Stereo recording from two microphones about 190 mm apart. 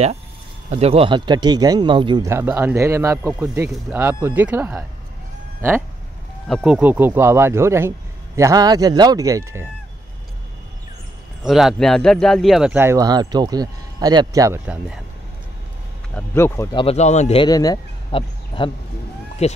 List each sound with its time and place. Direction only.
0.7 s speech: 30° right (ahead or behind)
2.3 s speech: 10° right (ahead or behind)
6.4 s speech: centre (ahead or behind)
11.4 s speech: centre (ahead or behind); by 14.6 s 20° right (ahead or behind)
16.2 s speech: 15° left (ahead or behind)
16.7 s speech: 35° left (ahead or behind)
17.5 s speech: 20° left (ahead or behind)